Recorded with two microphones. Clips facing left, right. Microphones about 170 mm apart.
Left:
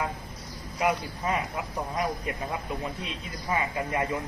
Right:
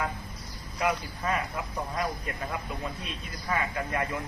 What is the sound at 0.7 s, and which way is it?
Speech, 20° left (ahead or behind).